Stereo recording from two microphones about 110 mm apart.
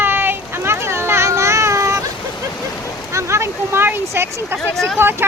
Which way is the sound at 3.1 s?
25° right (ahead or behind).